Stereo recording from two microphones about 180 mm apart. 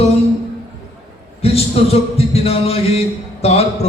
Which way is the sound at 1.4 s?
35° left (ahead or behind).